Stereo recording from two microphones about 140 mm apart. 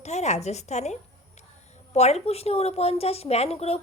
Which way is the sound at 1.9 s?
50° left (ahead or behind).